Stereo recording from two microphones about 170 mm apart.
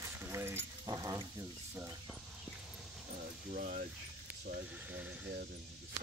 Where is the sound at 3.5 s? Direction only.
50° right (ahead or behind).